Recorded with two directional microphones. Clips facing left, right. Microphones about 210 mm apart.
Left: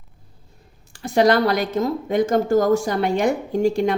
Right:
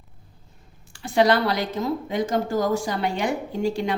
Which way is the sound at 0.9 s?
45° left (ahead or behind).